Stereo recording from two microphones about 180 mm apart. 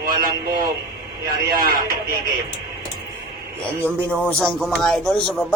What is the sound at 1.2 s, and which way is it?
Speech, 50° right (ahead or behind).